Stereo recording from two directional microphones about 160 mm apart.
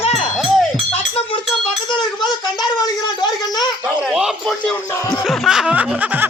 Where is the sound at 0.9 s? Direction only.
35° left (ahead or behind).